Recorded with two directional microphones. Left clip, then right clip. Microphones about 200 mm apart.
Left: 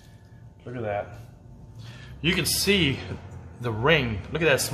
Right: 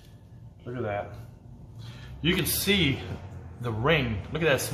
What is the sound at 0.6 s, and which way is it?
Speech, 10° left (ahead or behind).